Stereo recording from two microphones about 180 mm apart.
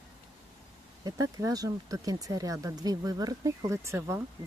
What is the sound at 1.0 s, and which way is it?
Speech, 20° right (ahead or behind).